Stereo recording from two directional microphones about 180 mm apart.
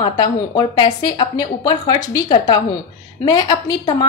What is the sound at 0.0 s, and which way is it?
A woman's voice, 25° left (ahead or behind).